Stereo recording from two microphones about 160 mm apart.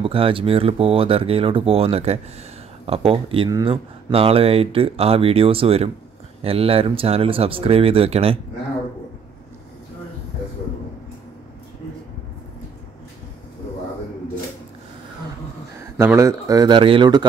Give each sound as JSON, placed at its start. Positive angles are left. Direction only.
{"t": 0.0, "sound": "speech", "side_deg": -35}
{"t": 15.8, "sound": "speech", "side_deg": -15}